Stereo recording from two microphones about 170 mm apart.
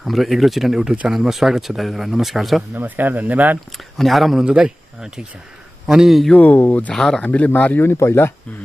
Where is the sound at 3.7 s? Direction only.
Centre (ahead or behind).